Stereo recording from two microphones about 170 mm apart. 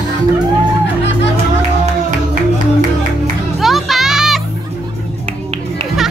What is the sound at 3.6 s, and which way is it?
Music, centre (ahead or behind).